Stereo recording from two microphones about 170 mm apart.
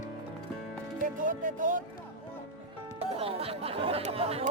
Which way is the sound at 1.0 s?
50° right (ahead or behind).